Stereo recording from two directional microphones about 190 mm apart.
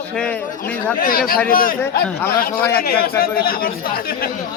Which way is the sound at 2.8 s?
50° left (ahead or behind).